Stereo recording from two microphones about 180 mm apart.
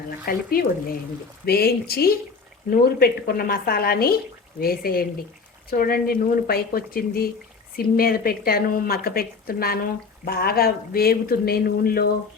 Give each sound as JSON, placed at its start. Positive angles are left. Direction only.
{"t": 0.3, "sound": "a woman's voice", "side_deg": 60}
{"t": 1.5, "sound": "a woman's voice", "side_deg": 60}